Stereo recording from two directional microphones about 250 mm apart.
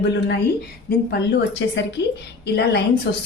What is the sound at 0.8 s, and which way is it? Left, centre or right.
A woman's voice, left.